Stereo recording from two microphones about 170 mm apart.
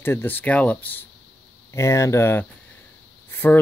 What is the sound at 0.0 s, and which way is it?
Speech, 10° left (ahead or behind).